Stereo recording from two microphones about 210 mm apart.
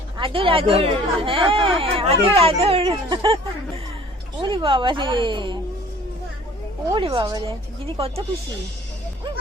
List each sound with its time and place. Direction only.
0.2 s speech: 25° right (ahead or behind)
4.4 s speech: 25° right (ahead or behind)
6.9 s speech: 25° right (ahead or behind)